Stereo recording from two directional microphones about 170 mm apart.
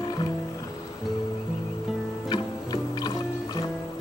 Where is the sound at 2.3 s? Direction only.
25° left (ahead or behind).